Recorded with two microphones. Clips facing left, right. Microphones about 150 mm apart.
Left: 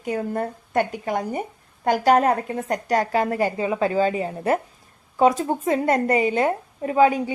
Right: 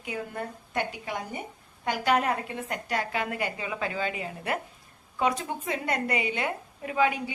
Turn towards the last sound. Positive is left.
turn(degrees=40)  # may be behind; listen again after turning